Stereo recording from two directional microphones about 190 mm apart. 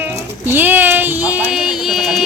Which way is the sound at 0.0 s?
10° right (ahead or behind).